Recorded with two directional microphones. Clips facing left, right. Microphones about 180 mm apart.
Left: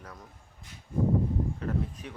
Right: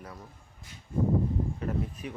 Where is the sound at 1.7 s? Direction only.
10° right (ahead or behind).